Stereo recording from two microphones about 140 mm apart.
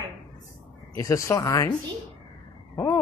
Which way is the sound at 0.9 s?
20° left (ahead or behind).